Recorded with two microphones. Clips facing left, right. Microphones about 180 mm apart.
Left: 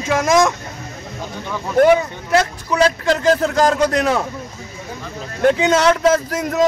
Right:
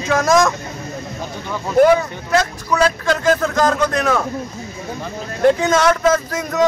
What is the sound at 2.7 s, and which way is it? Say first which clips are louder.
Speech: left 1 dB; 30° left (ahead or behind).